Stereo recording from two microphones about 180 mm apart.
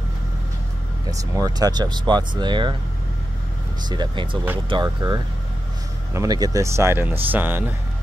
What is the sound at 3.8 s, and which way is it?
Speech, 25° right (ahead or behind).